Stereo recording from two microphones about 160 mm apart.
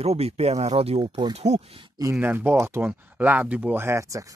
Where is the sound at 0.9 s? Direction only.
25° right (ahead or behind).